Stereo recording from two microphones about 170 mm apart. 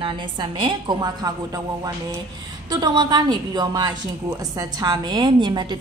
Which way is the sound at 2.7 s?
25° right (ahead or behind).